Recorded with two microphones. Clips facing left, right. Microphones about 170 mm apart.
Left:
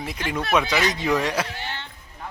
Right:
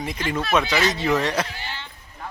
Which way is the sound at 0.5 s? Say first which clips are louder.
Even; 15° left (ahead or behind).